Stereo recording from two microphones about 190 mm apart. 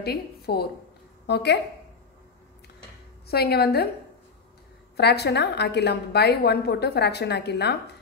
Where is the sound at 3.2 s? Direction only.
55° left (ahead or behind).